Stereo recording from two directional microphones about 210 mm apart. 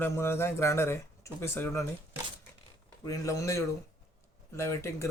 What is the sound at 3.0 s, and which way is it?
Speech, 15° left (ahead or behind).